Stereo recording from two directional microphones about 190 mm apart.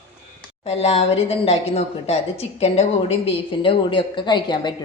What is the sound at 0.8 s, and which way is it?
A woman's voice, 30° left (ahead or behind).